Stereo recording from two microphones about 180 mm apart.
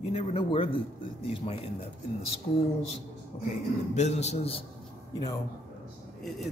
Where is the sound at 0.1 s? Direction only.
30° left (ahead or behind).